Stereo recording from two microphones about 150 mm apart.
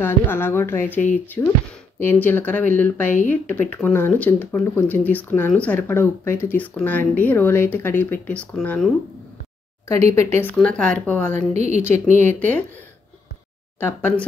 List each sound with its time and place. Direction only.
0.0 s speech: 15° left (ahead or behind)
10.1 s speech: 15° left (ahead or behind)
11.3 s a woman's voice: 50° right (ahead or behind)
12.4 s speech: 10° left (ahead or behind)
13.7 s speech: 10° left (ahead or behind)